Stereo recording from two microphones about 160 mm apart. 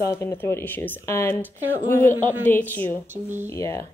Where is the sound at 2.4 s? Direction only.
10° left (ahead or behind).